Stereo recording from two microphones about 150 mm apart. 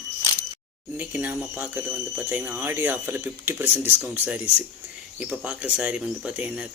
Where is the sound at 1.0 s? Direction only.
10° right (ahead or behind).